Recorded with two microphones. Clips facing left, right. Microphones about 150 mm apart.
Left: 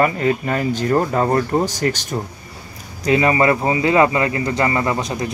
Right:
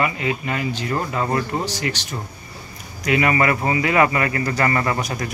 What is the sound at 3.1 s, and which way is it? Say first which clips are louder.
Speech: left 3 dB; 30° left (ahead or behind).